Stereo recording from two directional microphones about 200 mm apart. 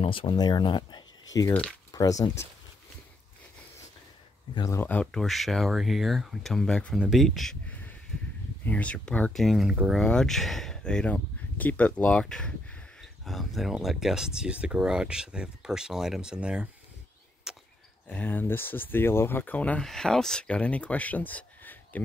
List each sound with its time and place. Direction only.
0.0 s speech: 25° left (ahead or behind)
4.6 s speech: 15° left (ahead or behind); by 16.6 s 5° right (ahead or behind)
17.5 s chop: 5° right (ahead or behind)
18.1 s speech: 10° left (ahead or behind)